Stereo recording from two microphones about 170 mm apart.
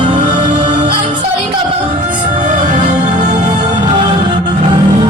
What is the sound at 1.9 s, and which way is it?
Music, 50° right (ahead or behind).